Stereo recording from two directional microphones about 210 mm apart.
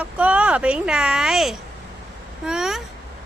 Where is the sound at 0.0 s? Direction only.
5° right (ahead or behind).